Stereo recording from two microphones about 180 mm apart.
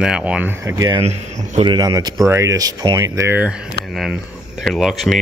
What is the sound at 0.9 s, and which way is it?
Speech, 40° right (ahead or behind).